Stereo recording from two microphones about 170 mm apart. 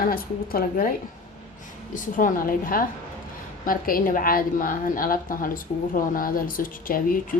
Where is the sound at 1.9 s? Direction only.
50° left (ahead or behind).